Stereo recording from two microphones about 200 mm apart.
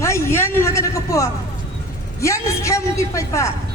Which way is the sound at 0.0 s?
15° left (ahead or behind).